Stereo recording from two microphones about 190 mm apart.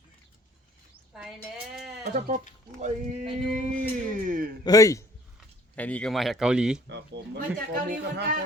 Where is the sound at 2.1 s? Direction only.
40° right (ahead or behind).